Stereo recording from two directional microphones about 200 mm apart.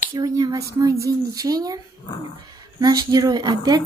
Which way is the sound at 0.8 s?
15° right (ahead or behind).